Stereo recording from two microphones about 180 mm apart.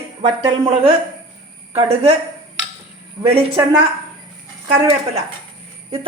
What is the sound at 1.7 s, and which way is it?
Speech, 35° right (ahead or behind).